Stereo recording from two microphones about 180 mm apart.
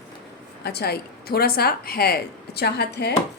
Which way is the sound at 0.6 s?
60° left (ahead or behind).